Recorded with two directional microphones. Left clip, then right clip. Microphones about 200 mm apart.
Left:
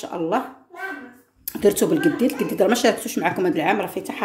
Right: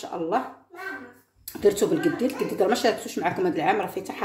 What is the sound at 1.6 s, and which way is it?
Speech, 25° left (ahead or behind).